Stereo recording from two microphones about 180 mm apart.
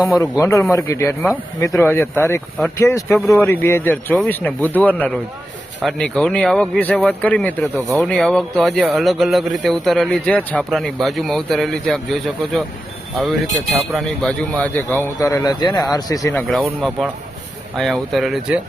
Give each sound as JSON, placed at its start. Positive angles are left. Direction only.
{"t": 0.2, "sound": "speech", "side_deg": 15}
{"t": 13.9, "sound": "speech", "side_deg": 0}
{"t": 16.3, "sound": "speech", "side_deg": 0}